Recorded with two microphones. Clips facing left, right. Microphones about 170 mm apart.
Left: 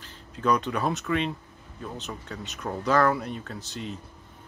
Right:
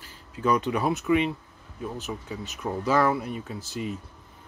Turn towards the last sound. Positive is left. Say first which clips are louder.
# right 3 dB
turn(degrees=-5)  # may be behind; listen again after turning